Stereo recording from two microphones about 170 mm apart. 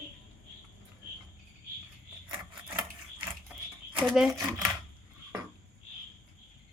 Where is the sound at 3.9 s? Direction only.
30° right (ahead or behind).